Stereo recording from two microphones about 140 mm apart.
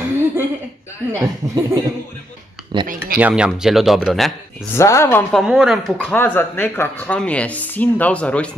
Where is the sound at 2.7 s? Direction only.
35° right (ahead or behind).